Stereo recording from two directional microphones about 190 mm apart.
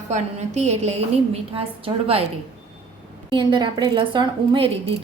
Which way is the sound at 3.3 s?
25° right (ahead or behind).